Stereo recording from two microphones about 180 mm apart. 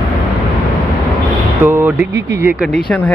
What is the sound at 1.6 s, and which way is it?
Speech, 10° right (ahead or behind).